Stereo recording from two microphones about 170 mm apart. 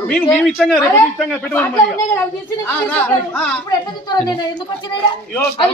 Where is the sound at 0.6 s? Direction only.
Centre (ahead or behind).